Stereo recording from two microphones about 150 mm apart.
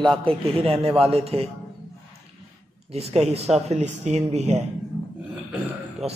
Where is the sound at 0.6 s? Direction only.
40° right (ahead or behind).